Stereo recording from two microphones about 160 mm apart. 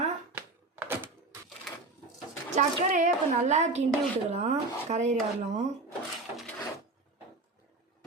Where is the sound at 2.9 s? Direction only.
50° right (ahead or behind).